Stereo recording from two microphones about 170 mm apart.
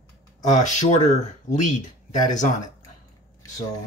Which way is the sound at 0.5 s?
45° left (ahead or behind).